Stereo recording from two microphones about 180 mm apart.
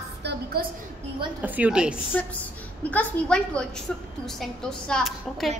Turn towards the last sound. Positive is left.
turn(degrees=0)  # may be behind; listen again after turning